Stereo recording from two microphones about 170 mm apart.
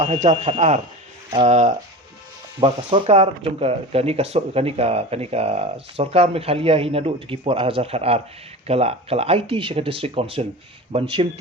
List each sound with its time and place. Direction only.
0.0 s speech: 45° right (ahead or behind)
2.6 s speech: 30° right (ahead or behind)